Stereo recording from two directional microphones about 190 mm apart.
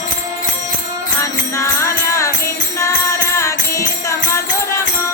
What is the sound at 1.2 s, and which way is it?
Music, 15° left (ahead or behind).